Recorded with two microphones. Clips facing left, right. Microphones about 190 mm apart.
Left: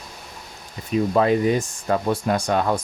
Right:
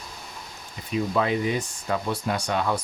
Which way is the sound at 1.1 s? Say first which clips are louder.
Left 6 dB; 40° left (ahead or behind).